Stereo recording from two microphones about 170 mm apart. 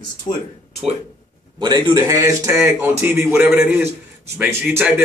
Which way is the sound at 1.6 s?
25° right (ahead or behind).